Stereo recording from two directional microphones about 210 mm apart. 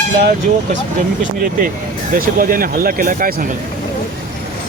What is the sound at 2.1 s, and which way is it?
Speech, 40° right (ahead or behind).